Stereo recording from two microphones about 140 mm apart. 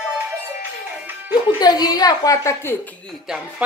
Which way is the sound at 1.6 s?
30° left (ahead or behind).